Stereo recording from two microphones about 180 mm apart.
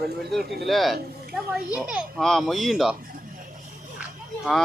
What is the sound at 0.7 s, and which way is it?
Speech, centre (ahead or behind).